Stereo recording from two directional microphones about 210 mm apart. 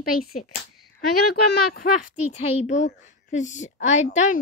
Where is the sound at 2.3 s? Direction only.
35° left (ahead or behind).